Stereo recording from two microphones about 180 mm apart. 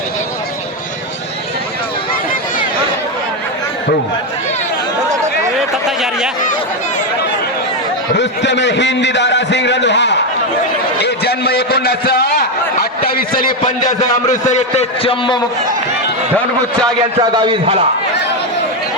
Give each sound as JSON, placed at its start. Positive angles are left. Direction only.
{"t": 6.0, "sound": "speech", "side_deg": -5}
{"t": 8.1, "sound": "a man's voice", "side_deg": 80}
{"t": 11.0, "sound": "a man's voice", "side_deg": 60}
{"t": 14.4, "sound": "a man's voice", "side_deg": 40}
{"t": 17.2, "sound": "a man's voice", "side_deg": -25}